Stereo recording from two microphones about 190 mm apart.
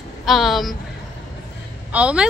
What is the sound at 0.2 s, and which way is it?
Speech, centre (ahead or behind).